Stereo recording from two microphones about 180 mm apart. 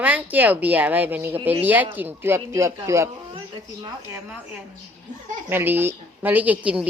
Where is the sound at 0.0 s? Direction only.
10° right (ahead or behind).